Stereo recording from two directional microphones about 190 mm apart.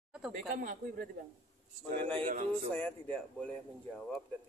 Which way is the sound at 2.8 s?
10° left (ahead or behind).